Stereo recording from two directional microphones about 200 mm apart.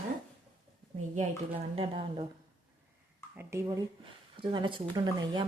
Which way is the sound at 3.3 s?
10° right (ahead or behind).